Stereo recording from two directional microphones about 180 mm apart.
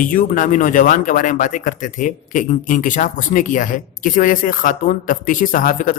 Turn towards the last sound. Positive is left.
turn(degrees=50)  # may be behind; listen again after turning